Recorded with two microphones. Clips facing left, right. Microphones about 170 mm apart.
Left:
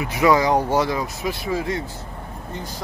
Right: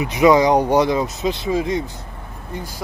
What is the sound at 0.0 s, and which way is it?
Speech, 20° right (ahead or behind).